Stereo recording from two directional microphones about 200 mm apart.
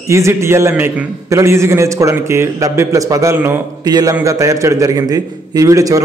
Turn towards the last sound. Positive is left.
turn(degrees=-15)  # may be behind; listen again after turning